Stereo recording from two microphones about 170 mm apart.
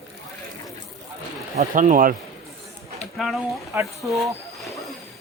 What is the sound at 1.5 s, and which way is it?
Speech, 45° right (ahead or behind).